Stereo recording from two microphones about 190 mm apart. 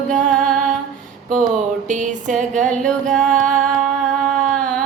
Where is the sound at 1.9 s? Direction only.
40° right (ahead or behind).